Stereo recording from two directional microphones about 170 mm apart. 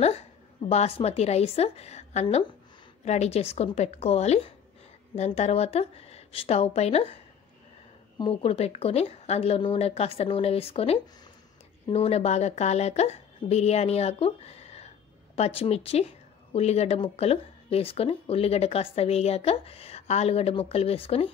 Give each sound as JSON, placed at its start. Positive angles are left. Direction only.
{"t": 0.7, "sound": "speech", "side_deg": 35}
{"t": 8.2, "sound": "speech", "side_deg": 30}